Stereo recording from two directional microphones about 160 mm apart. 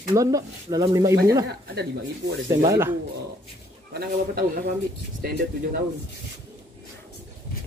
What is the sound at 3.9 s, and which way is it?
Speech, 65° right (ahead or behind).